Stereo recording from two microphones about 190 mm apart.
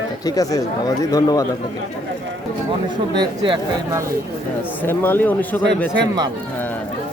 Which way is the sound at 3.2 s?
25° right (ahead or behind).